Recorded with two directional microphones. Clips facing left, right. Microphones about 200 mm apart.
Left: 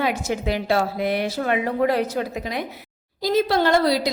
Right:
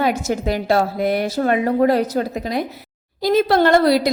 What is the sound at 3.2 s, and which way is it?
Speech, 55° right (ahead or behind).